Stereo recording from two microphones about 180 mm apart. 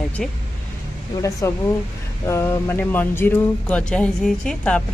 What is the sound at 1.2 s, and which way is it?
Speech, 20° left (ahead or behind).